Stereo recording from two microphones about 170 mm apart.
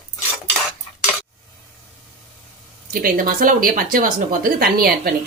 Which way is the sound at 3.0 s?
55° right (ahead or behind).